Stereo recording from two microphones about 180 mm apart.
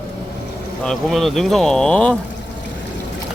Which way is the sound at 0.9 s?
Centre (ahead or behind).